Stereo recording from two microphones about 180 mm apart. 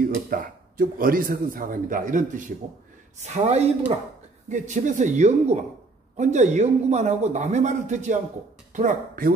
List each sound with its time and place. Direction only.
0.0 s speech: 50° right (ahead or behind)